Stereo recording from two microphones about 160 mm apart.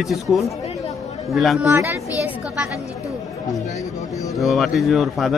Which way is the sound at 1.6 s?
15° right (ahead or behind).